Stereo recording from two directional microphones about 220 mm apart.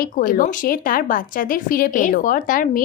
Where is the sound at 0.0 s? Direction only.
40° left (ahead or behind).